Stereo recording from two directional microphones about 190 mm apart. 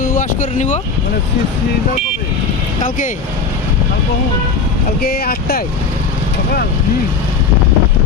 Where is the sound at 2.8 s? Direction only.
40° left (ahead or behind).